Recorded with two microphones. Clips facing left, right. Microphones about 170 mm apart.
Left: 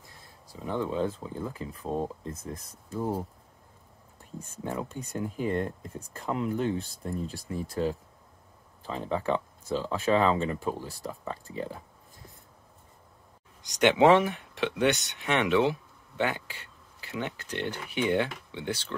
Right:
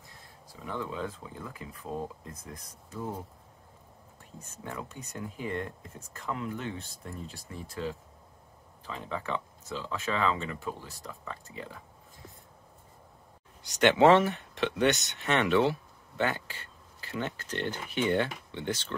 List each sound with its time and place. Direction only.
0.7 s speech: 30° left (ahead or behind)
4.6 s speech: 30° left (ahead or behind)
13.6 s speech: 15° left (ahead or behind)